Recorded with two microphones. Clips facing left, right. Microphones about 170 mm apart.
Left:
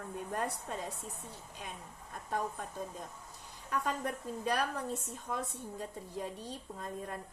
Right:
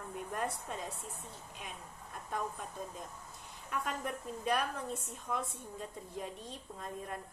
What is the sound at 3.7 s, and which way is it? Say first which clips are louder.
A woman's voice: left 3 dB; 35° left (ahead or behind).